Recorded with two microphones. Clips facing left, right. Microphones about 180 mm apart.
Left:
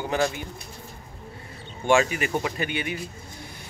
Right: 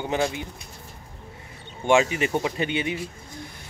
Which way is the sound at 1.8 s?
20° right (ahead or behind).